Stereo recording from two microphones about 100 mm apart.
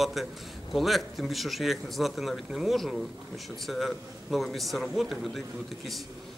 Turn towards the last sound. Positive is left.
turn(degrees=0)  # may be behind; listen again after turning